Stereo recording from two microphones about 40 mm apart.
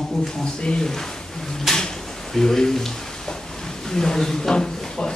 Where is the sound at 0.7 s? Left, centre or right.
Centre.